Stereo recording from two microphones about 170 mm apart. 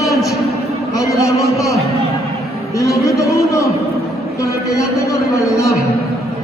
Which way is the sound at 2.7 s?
20° left (ahead or behind).